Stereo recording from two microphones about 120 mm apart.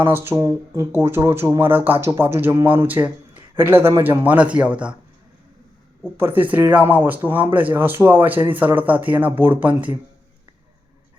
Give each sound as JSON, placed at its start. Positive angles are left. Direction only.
{"t": 0.0, "sound": "speech", "side_deg": -20}
{"t": 6.1, "sound": "speech", "side_deg": -15}